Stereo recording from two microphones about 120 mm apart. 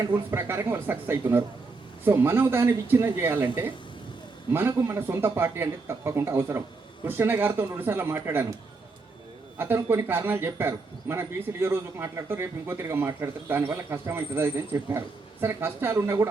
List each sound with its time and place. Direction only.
0.3 s speech: 20° right (ahead or behind)
9.6 s speech: 20° right (ahead or behind)